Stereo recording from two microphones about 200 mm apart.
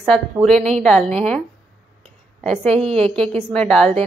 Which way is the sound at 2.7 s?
30° right (ahead or behind).